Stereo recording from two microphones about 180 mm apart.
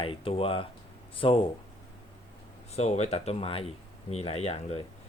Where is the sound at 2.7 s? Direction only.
35° left (ahead or behind).